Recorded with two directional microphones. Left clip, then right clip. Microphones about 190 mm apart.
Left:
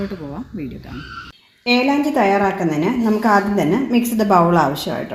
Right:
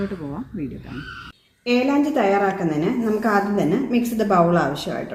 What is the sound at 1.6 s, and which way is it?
A woman's voice, 40° left (ahead or behind).